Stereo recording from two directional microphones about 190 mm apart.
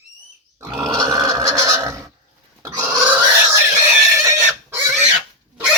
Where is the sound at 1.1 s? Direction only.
15° right (ahead or behind).